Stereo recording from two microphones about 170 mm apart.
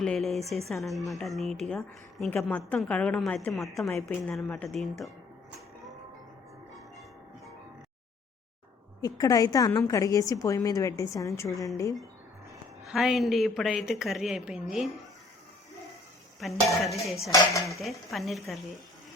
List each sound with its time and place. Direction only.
0.0 s a woman's voice: centre (ahead or behind)
9.0 s a woman's voice: 25° left (ahead or behind)
12.8 s a woman's voice: centre (ahead or behind)
16.4 s a woman's voice: centre (ahead or behind)